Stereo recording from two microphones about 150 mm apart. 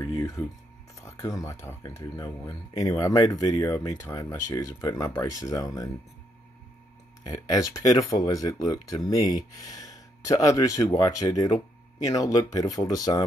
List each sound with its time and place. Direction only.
0.0 s speech: 25° left (ahead or behind)
7.2 s speech: 25° left (ahead or behind)